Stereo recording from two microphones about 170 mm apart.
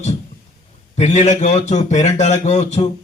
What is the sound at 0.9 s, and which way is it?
A man's voice, 45° left (ahead or behind).